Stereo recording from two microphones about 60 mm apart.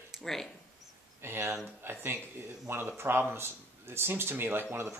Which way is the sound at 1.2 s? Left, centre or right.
Right.